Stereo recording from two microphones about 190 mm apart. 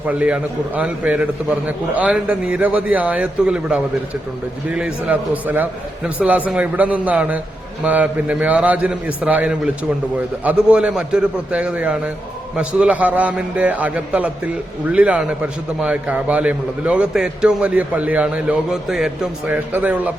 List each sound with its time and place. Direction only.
0.1 s a man's voice: 5° right (ahead or behind)